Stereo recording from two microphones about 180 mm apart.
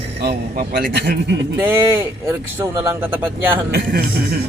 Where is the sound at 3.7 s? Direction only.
60° right (ahead or behind).